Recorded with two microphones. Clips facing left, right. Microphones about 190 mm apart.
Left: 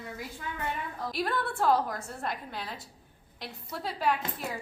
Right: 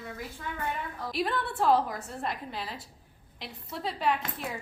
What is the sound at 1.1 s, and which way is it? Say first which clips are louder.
A woman's voice: right 1 dB; centre (ahead or behind).